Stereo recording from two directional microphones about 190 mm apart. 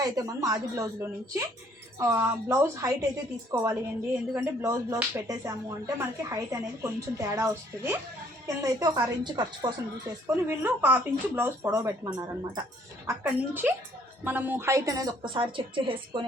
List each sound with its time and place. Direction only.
0.0 s a woman's voice: 20° right (ahead or behind)
10.3 s a woman's voice: 10° right (ahead or behind)